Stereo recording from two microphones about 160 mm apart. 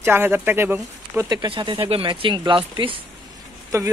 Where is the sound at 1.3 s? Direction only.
25° right (ahead or behind).